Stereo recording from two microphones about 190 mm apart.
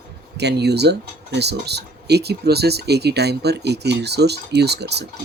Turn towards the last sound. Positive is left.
turn(degrees=-60)  # may be behind; listen again after turning